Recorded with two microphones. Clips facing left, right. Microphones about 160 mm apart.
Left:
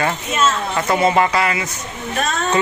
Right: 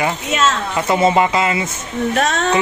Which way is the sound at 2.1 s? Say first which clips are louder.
Right 2 dB; 75° right (ahead or behind).